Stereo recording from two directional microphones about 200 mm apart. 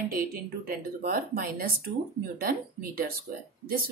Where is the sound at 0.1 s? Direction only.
45° right (ahead or behind).